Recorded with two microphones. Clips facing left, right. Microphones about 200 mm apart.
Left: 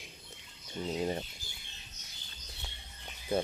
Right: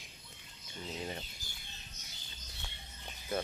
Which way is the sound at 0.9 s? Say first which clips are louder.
Left 8 dB; 35° left (ahead or behind).